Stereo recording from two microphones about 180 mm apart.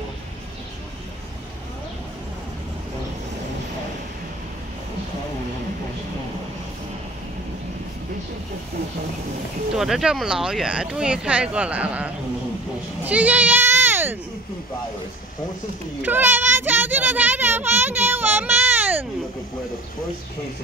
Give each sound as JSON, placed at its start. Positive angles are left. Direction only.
{"t": 9.8, "sound": "a child's voice", "side_deg": 0}
{"t": 16.0, "sound": "a child's voice", "side_deg": -10}